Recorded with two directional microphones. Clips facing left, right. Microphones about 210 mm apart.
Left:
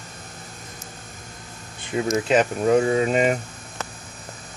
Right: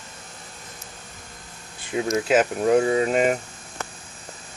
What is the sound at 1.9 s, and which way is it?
Speech, centre (ahead or behind).